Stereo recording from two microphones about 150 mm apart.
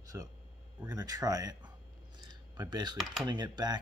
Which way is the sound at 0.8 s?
25° right (ahead or behind).